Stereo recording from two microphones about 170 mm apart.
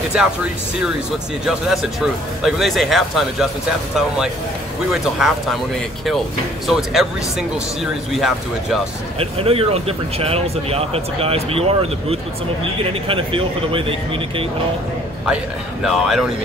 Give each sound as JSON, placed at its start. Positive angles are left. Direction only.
{"t": 0.1, "sound": "speech", "side_deg": -5}
{"t": 1.4, "sound": "speech", "side_deg": -5}
{"t": 4.9, "sound": "speech", "side_deg": 0}
{"t": 6.7, "sound": "speech", "side_deg": 0}
{"t": 9.2, "sound": "speech", "side_deg": -35}
{"t": 15.8, "sound": "speech", "side_deg": 0}